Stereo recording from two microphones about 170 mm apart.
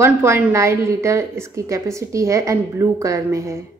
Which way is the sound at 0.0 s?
15° right (ahead or behind).